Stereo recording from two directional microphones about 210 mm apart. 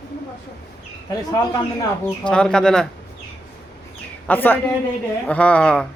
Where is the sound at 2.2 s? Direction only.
5° left (ahead or behind).